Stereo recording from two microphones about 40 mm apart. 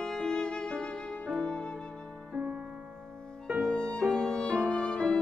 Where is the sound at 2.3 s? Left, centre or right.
Right.